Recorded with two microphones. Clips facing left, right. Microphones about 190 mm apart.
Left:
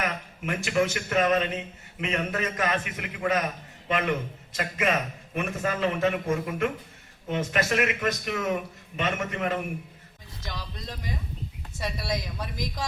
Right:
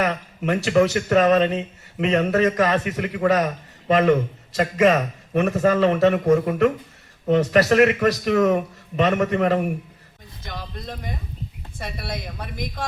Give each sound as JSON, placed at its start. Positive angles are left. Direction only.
{"t": 0.0, "sound": "a man's voice", "side_deg": -40}
{"t": 10.4, "sound": "speech", "side_deg": -55}